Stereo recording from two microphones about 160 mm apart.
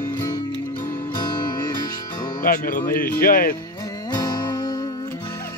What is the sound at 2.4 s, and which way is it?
Speech, 65° left (ahead or behind).